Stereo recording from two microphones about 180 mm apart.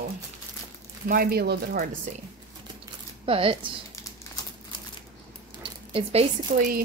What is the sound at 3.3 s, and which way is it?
Speech, 30° right (ahead or behind).